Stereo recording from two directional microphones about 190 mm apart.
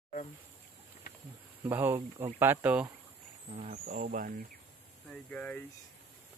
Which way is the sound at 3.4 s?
35° right (ahead or behind).